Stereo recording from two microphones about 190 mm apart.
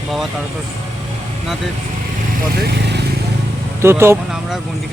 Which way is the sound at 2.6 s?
60° right (ahead or behind).